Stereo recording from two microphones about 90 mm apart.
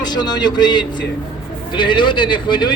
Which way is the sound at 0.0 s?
50° left (ahead or behind).